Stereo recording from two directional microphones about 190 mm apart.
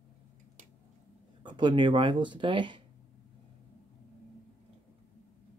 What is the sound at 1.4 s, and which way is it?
Speech, 25° right (ahead or behind).